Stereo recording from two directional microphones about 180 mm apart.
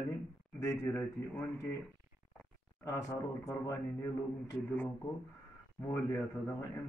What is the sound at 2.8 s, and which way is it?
A man's voice, 15° left (ahead or behind).